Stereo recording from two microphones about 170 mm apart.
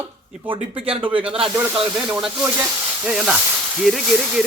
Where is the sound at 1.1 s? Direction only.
5° right (ahead or behind).